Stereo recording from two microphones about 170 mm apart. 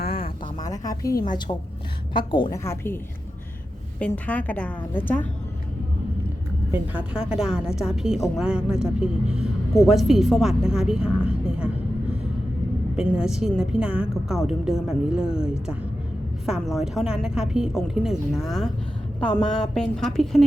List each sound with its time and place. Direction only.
0.6 s a woman's voice: 20° left (ahead or behind)
2.6 s a woman's voice: 15° left (ahead or behind)
4.0 s a woman's voice: 10° left (ahead or behind)
6.7 s a woman's voice: 5° right (ahead or behind)
13.0 s a woman's voice: 5° right (ahead or behind)